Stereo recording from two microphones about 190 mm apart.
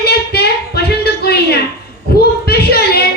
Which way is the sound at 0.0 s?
55° left (ahead or behind).